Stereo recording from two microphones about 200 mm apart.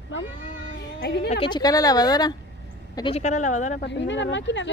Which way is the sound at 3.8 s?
65° left (ahead or behind).